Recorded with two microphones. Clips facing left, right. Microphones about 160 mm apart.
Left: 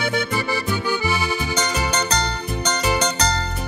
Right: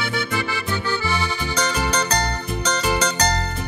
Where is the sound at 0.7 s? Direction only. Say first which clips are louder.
Even; 10° left (ahead or behind).